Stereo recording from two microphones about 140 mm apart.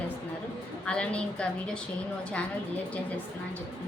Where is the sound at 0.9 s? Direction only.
10° left (ahead or behind).